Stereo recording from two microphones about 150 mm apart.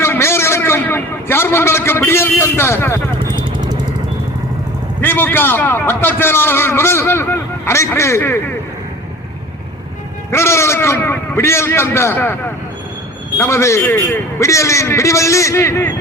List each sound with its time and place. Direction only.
0.0 s a sound: 15° left (ahead or behind)
4.9 s a man's voice: 15° left (ahead or behind)
10.3 s a man's voice: 20° left (ahead or behind)
13.4 s a man's voice: 20° left (ahead or behind)